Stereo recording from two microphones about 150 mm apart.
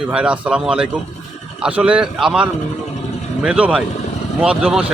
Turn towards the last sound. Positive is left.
turn(degrees=-5)  # may be behind; listen again after turning